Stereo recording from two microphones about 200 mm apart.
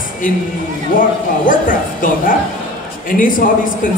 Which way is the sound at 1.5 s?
45° left (ahead or behind).